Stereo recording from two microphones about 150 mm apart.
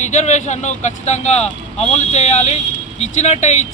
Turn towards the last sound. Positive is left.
turn(degrees=50)  # may be behind; listen again after turning